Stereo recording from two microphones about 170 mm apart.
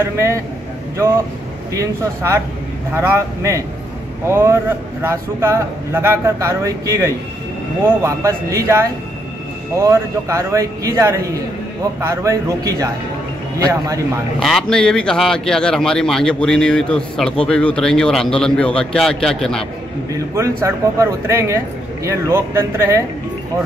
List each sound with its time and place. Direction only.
0.0 s a man's voice: 15° right (ahead or behind)
1.8 s a man's voice: 15° right (ahead or behind)
14.4 s a man's voice: centre (ahead or behind)
20.3 s a man's voice: 15° right (ahead or behind)